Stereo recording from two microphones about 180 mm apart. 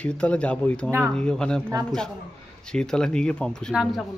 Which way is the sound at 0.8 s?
15° right (ahead or behind).